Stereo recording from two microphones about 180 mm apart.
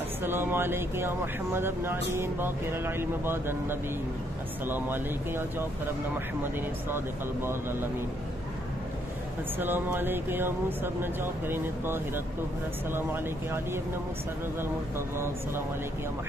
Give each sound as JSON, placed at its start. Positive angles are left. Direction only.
{"t": 0.2, "sound": "speech", "side_deg": -10}
{"t": 9.6, "sound": "speech", "side_deg": -10}
{"t": 14.6, "sound": "speech", "side_deg": -15}